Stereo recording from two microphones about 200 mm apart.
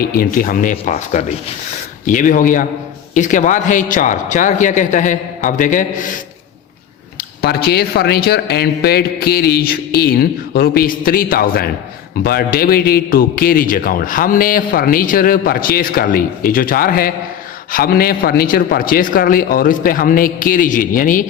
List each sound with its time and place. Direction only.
0.0 s a man's voice: 45° left (ahead or behind)
7.2 s a man's voice: 50° left (ahead or behind)